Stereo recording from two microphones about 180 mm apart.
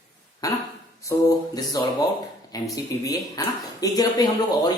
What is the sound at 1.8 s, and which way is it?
Speech, 20° left (ahead or behind).